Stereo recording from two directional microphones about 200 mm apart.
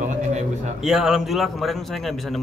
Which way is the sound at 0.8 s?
Centre (ahead or behind).